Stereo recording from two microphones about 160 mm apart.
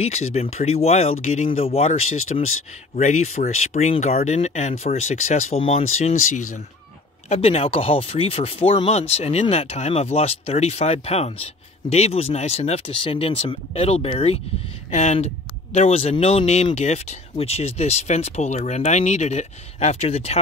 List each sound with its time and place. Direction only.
0.0 s speech: 40° left (ahead or behind)
6.2 s speech: 55° left (ahead or behind)
7.2 s speech: 40° left (ahead or behind)